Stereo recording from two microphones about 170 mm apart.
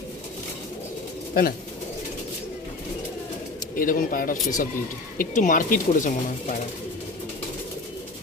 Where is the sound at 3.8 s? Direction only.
55° left (ahead or behind).